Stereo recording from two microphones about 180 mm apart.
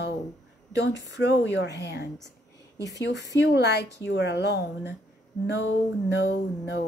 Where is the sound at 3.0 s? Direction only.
75° left (ahead or behind).